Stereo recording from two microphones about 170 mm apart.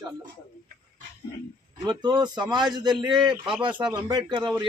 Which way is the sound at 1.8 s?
25° right (ahead or behind).